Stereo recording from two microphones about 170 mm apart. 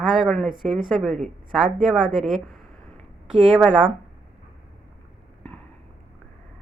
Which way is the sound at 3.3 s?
40° right (ahead or behind).